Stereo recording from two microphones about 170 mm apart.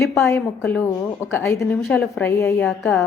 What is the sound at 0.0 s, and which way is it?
A woman's voice, 15° left (ahead or behind).